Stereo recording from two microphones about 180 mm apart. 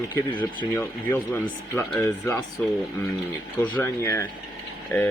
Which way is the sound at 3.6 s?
10° left (ahead or behind).